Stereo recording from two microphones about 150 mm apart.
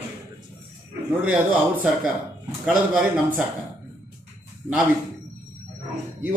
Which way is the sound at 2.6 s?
5° right (ahead or behind).